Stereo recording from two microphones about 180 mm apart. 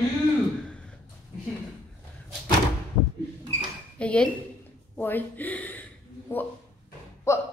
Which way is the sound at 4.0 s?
5° left (ahead or behind).